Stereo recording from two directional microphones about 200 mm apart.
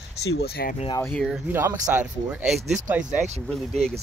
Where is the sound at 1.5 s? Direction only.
10° right (ahead or behind).